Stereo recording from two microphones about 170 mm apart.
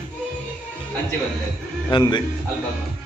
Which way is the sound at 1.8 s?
25° left (ahead or behind).